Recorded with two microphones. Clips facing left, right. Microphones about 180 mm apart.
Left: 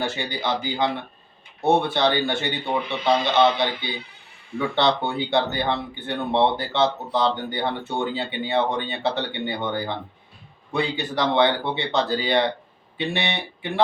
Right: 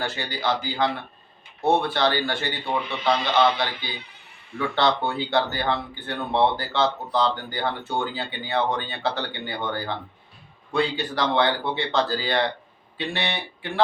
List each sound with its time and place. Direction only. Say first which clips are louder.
0.0 s speech: left 1 dB; 25° left (ahead or behind)
4.5 s speech: left 1 dB; 20° left (ahead or behind)